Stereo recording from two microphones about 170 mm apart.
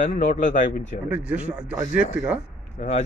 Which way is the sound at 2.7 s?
40° left (ahead or behind).